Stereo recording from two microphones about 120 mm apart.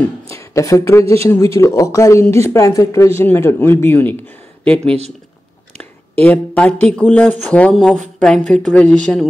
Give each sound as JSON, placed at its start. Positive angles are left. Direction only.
{"t": 0.3, "sound": "a sound", "side_deg": 25}
{"t": 1.2, "sound": "speech", "side_deg": 25}
{"t": 5.8, "sound": "speech", "side_deg": 10}